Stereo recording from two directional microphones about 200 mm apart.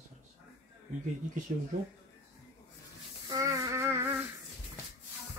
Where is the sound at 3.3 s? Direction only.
15° right (ahead or behind).